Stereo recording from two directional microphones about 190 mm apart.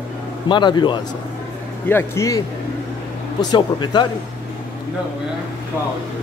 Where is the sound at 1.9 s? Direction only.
15° left (ahead or behind).